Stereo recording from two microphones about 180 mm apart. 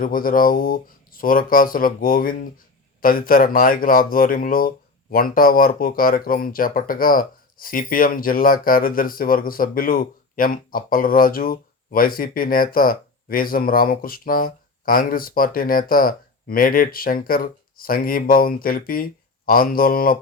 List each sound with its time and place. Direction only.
0.0 s speech: 50° left (ahead or behind)